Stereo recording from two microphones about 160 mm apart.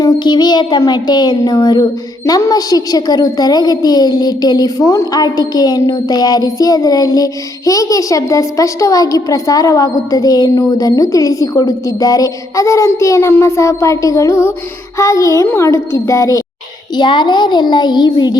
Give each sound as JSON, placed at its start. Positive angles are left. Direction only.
{"t": 0.0, "sound": "a child's voice", "side_deg": 25}